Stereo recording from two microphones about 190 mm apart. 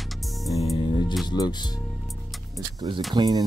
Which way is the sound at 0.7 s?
25° left (ahead or behind).